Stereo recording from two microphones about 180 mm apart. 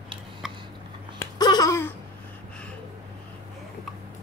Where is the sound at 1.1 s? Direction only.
20° left (ahead or behind).